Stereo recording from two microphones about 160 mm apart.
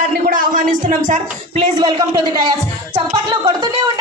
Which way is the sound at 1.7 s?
20° right (ahead or behind).